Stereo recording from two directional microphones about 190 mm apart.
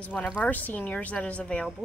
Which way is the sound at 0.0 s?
5° left (ahead or behind).